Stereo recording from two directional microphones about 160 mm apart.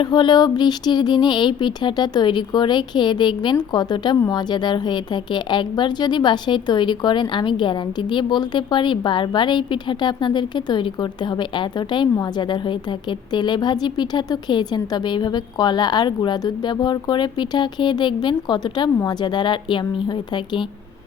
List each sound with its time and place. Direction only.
0.0 s a woman's voice: 25° left (ahead or behind)